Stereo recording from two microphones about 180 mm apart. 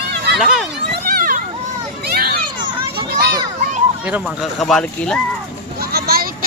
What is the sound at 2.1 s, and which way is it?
Children playing, 55° right (ahead or behind).